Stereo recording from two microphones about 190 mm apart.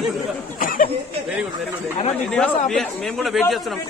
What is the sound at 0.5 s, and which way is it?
Speech, 45° left (ahead or behind).